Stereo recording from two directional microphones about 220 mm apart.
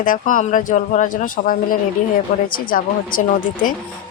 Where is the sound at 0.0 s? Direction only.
40° left (ahead or behind).